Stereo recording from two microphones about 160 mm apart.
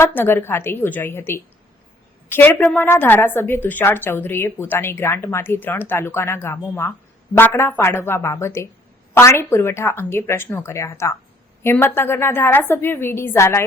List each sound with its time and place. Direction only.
0.0 s a woman's voice: 15° left (ahead or behind)